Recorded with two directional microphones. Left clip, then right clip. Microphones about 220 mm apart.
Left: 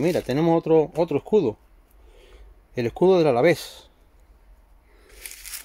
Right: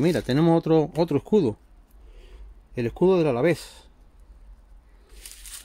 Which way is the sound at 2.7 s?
5° left (ahead or behind).